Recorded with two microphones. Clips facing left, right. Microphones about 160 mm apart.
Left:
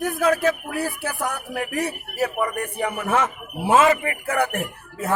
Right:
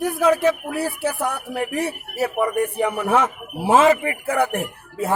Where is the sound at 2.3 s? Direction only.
10° right (ahead or behind).